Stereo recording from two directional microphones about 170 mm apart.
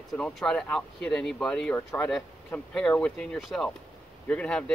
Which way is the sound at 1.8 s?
15° left (ahead or behind).